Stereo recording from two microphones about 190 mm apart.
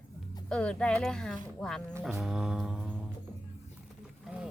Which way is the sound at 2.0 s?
Centre (ahead or behind).